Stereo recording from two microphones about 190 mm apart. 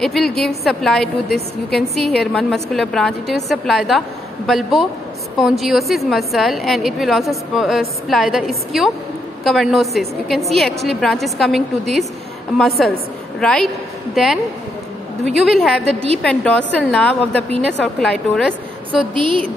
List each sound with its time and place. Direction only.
0.0 s a woman's voice: centre (ahead or behind)
15.9 s a woman's voice: 30° right (ahead or behind)
16.2 s a woman's voice: 5° left (ahead or behind)
19.1 s a woman's voice: 25° right (ahead or behind)